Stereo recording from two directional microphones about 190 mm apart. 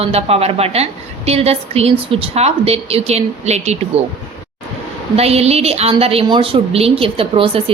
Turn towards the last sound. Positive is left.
turn(degrees=-30)  # may be behind; listen again after turning